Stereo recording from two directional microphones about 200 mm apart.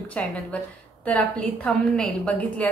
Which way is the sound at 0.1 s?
5° left (ahead or behind).